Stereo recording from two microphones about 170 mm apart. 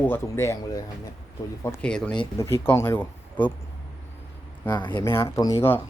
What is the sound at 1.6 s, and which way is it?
Speech, 5° left (ahead or behind).